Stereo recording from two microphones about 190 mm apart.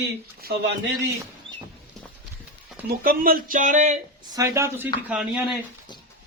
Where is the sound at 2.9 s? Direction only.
50° right (ahead or behind).